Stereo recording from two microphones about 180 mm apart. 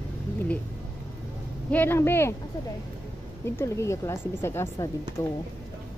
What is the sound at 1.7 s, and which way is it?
Speech, 10° left (ahead or behind).